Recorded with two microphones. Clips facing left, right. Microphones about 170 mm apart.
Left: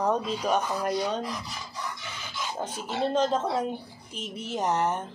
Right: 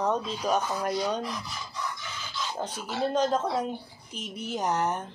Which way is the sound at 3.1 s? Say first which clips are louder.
Even; 5° left (ahead or behind).